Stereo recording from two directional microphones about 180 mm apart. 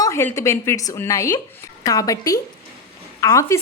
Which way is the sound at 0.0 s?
15° left (ahead or behind).